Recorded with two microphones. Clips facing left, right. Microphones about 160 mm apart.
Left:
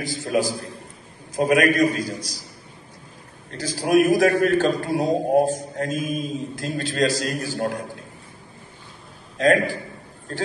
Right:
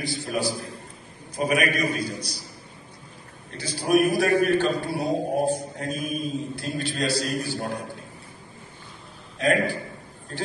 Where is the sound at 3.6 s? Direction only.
90° left.